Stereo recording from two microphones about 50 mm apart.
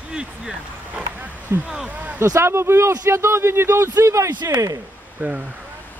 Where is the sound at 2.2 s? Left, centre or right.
Right.